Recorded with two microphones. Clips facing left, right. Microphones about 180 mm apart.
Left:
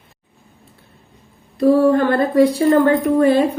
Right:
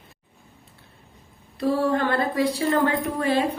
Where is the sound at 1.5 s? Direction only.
45° left (ahead or behind).